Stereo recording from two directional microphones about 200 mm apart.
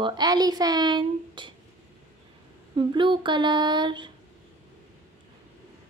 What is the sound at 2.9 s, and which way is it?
Speech, 25° right (ahead or behind).